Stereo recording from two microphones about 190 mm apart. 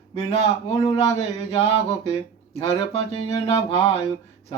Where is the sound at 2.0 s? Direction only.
35° left (ahead or behind).